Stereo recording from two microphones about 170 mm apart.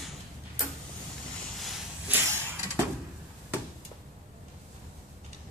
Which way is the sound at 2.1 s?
15° right (ahead or behind).